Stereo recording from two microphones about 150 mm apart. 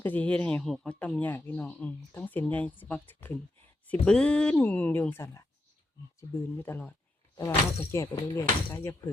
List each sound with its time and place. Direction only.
0.0 s speech: 10° left (ahead or behind)